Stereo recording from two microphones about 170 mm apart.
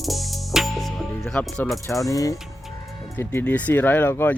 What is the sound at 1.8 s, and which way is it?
Speech, 20° left (ahead or behind).